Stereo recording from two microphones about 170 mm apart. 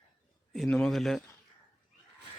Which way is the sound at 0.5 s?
Centre (ahead or behind).